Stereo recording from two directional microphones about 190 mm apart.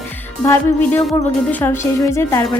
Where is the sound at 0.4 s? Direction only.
10° left (ahead or behind).